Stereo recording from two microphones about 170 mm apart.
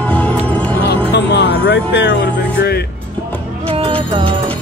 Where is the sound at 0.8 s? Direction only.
85° left.